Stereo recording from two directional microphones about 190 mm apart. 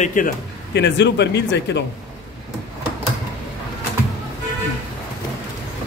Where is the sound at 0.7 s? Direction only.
65° left (ahead or behind).